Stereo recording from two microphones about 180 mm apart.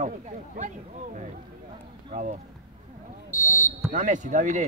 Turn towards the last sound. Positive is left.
turn(degrees=-45)  # may be behind; listen again after turning